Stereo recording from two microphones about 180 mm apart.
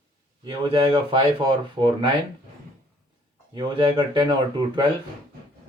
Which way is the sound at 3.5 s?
25° right (ahead or behind).